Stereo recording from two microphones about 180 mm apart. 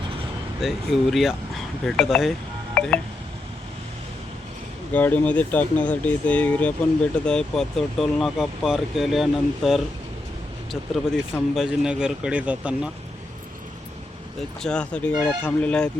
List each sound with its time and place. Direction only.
0.6 s speech: centre (ahead or behind)
2.7 s telephone dialing: 5° left (ahead or behind)
4.9 s speech: 10° left (ahead or behind); by 12.9 s 5° right (ahead or behind)
14.6 s speech: 5° left (ahead or behind)